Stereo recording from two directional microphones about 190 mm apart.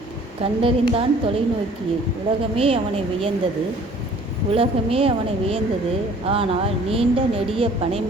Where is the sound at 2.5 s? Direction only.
30° right (ahead or behind).